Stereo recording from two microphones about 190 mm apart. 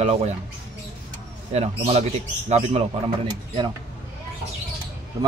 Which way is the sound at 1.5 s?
35° right (ahead or behind).